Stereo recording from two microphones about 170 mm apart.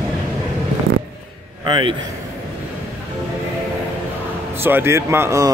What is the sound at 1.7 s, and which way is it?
Speech, 30° right (ahead or behind).